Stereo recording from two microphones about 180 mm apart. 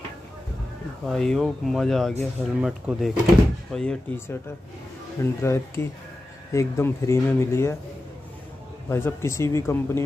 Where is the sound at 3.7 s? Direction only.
10° left (ahead or behind).